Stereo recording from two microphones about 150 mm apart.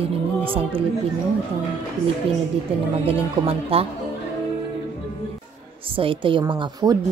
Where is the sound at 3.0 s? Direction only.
40° right (ahead or behind).